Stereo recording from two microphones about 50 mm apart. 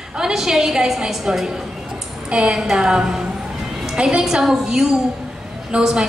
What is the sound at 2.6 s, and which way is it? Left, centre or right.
A woman's voice, centre.